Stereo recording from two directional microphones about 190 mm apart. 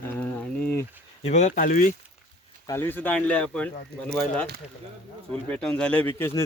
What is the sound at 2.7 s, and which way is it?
Speech, 10° left (ahead or behind).